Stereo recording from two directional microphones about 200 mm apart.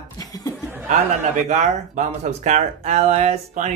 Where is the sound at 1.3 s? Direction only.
35° right (ahead or behind).